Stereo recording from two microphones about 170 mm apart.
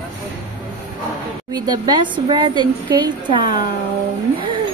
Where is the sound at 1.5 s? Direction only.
25° right (ahead or behind).